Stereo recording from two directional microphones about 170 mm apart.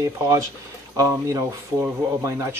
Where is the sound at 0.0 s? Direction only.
20° right (ahead or behind).